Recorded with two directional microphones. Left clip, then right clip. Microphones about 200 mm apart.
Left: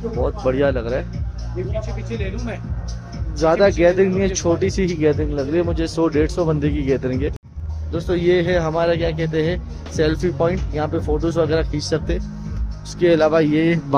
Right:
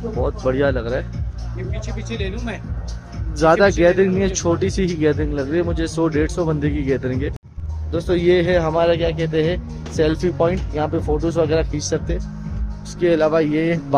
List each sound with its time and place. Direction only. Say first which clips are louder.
0.2 s speech: even; centre (ahead or behind)
1.8 s speech: left 1 dB; 50° right (ahead or behind)
3.7 s speech: even; centre (ahead or behind)
7.9 s a man's voice: right 1 dB; 10° right (ahead or behind)
13.0 s speech: left 1 dB; 10° left (ahead or behind)